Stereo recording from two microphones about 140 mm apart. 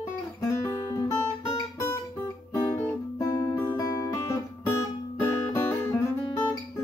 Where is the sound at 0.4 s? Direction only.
20° left (ahead or behind).